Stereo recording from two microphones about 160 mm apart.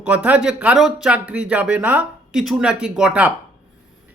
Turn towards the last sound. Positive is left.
turn(degrees=-5)  # may be behind; listen again after turning